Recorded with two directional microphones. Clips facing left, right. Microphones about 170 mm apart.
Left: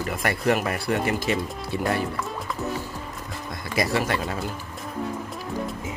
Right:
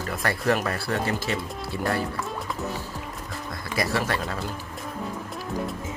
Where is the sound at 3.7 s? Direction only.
20° left (ahead or behind).